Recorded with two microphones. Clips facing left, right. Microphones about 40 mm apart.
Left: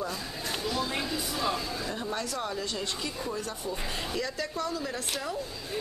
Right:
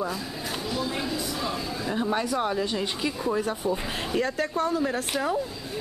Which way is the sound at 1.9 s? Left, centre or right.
Right.